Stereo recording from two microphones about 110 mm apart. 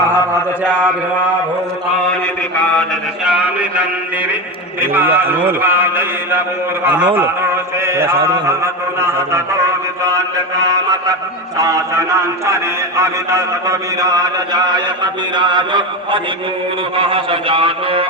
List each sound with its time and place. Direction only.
3.2 s a sound: 10° right (ahead or behind)
4.8 s a man's voice: 20° right (ahead or behind)
10.0 s mantra: 30° right (ahead or behind)
17.0 s a man's voice: 55° right (ahead or behind)